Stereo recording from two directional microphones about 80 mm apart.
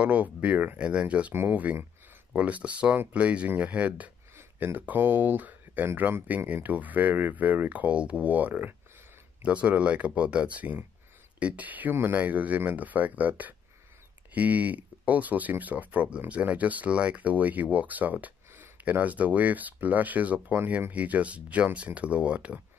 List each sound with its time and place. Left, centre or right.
0.0 s speech: centre
4.4 s speech: right